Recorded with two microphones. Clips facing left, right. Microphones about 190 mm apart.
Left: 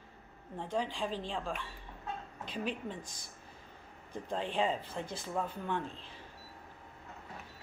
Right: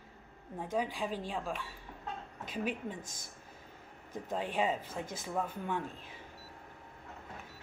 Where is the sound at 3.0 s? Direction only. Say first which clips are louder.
Right 1 dB; 45° right (ahead or behind).